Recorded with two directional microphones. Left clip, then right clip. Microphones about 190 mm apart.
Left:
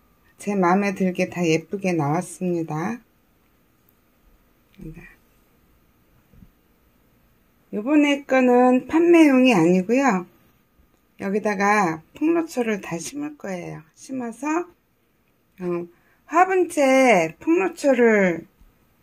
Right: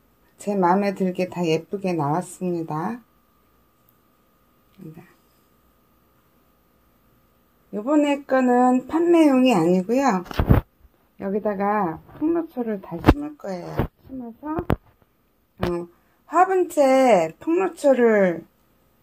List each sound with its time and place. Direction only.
0.4 s a woman's voice: centre (ahead or behind)
4.7 s a woman's voice: centre (ahead or behind)
7.7 s speech: 10° left (ahead or behind)
14.1 s a child's voice: 20° left (ahead or behind)
15.5 s a woman's voice: 5° left (ahead or behind)